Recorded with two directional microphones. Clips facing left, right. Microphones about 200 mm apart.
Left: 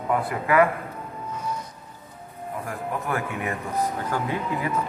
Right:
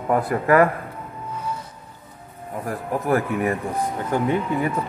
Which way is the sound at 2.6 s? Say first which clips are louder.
Right 8 dB; 35° right (ahead or behind).